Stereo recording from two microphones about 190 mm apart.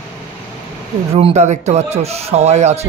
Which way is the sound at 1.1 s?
35° right (ahead or behind).